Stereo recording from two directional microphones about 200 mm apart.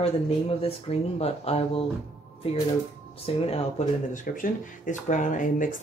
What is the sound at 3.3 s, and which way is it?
Speech, 30° left (ahead or behind).